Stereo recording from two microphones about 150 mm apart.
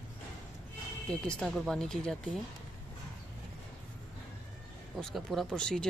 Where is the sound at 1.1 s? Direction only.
5° left (ahead or behind).